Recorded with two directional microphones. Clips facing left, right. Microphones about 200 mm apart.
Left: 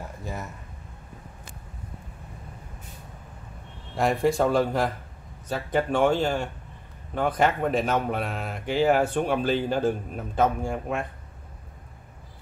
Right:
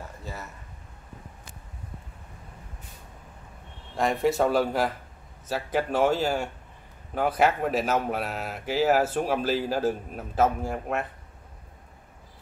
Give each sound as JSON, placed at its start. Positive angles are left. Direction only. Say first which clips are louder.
{"t": 0.2, "sound": "speech", "louder": "left 5 dB", "side_deg": 15}
{"t": 3.9, "sound": "speech", "louder": "left 1 dB", "side_deg": 0}